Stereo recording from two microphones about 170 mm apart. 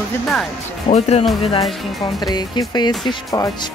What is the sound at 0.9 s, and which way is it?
Speech, 40° left (ahead or behind).